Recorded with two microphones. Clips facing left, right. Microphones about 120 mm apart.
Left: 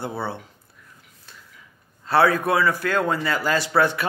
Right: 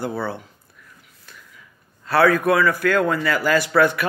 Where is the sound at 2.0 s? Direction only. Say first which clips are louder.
Right 2 dB; 25° left (ahead or behind).